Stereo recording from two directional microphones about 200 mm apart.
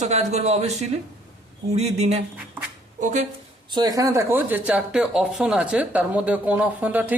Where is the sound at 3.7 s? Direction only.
20° right (ahead or behind).